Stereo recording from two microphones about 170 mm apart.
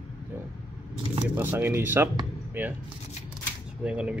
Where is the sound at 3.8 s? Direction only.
5° right (ahead or behind).